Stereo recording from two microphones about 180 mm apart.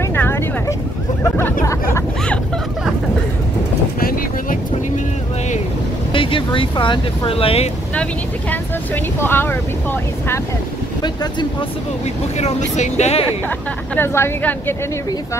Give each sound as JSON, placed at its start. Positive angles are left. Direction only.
{"t": 0.1, "sound": "vehicle", "side_deg": 10}
{"t": 1.2, "sound": "hubbub", "side_deg": 15}
{"t": 4.0, "sound": "vehicle", "side_deg": 55}
{"t": 6.1, "sound": "speech", "side_deg": 30}
{"t": 7.9, "sound": "speech", "side_deg": 10}
{"t": 12.4, "sound": "speech", "side_deg": 40}
{"t": 13.9, "sound": "speech", "side_deg": 15}